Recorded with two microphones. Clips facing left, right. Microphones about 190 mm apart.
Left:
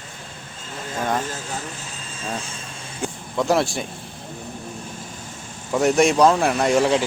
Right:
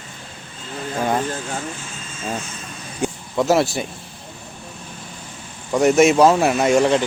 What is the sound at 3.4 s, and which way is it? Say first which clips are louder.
Speech: right 3 dB; centre (ahead or behind).